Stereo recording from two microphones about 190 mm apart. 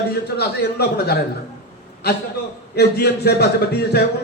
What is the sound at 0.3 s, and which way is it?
Speech, 60° left (ahead or behind).